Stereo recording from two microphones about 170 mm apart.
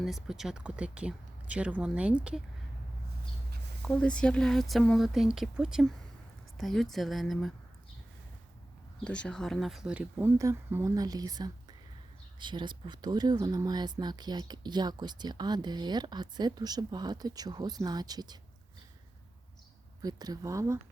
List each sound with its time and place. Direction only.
0.0 s speech: centre (ahead or behind)
3.8 s speech: 5° left (ahead or behind)
9.0 s speech: 5° left (ahead or behind); by 18.3 s 25° right (ahead or behind)
20.0 s speech: 20° right (ahead or behind)